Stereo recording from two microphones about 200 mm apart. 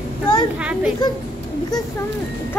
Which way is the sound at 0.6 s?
5° right (ahead or behind).